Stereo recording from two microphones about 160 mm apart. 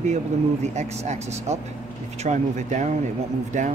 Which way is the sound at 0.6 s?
45° right (ahead or behind).